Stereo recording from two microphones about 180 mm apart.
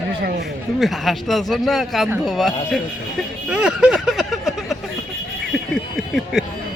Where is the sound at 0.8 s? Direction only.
Centre (ahead or behind).